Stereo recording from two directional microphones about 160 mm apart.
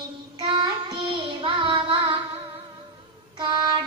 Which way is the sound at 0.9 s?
30° right (ahead or behind).